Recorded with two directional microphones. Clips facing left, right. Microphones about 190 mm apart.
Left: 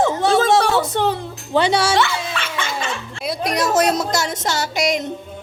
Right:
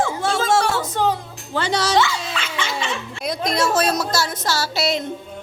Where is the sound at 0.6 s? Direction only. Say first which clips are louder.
Left 3 dB; 70° left (ahead or behind).